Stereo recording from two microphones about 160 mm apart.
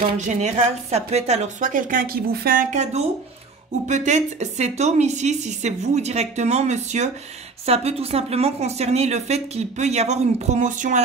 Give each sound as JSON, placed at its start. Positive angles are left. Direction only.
{"t": 0.3, "sound": "a woman's voice", "side_deg": -45}
{"t": 2.7, "sound": "a woman's voice", "side_deg": -45}